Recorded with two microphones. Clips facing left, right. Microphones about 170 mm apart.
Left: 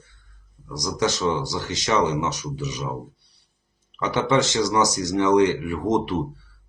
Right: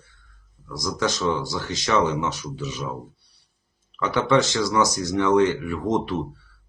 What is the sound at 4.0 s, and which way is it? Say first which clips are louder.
Speech: right 1 dB; 20° left (ahead or behind).